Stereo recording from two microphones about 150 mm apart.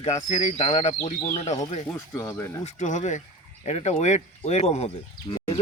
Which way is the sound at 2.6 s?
50° left (ahead or behind).